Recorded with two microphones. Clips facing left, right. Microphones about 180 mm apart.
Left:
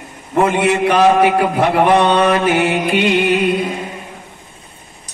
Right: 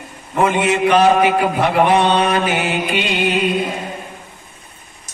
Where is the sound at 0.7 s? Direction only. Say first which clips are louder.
Even; 55° left (ahead or behind).